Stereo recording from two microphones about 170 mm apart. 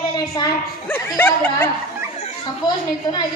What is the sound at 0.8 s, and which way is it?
Speech, 10° left (ahead or behind).